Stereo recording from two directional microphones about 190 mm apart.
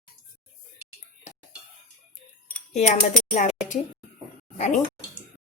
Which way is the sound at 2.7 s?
35° left (ahead or behind).